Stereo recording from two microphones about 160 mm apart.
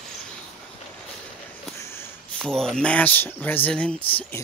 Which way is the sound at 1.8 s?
15° left (ahead or behind).